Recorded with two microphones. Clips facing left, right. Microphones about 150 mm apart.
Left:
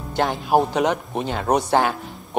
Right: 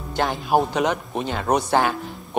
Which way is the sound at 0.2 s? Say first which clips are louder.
Left 1 dB; 25° left (ahead or behind).